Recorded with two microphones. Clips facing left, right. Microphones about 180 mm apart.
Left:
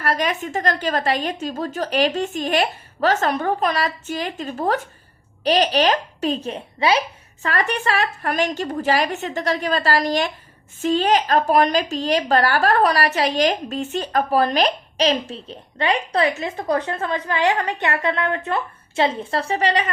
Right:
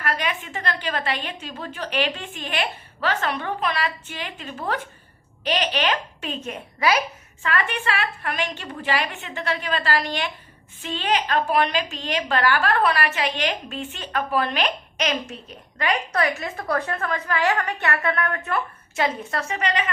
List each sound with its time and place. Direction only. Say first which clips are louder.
0.0 s a woman's voice: left 5 dB; 40° left (ahead or behind)
7.4 s a woman's voice: left 3 dB; 40° left (ahead or behind)